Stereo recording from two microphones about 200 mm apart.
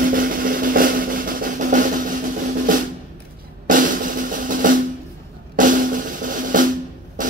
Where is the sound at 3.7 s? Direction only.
40° right (ahead or behind).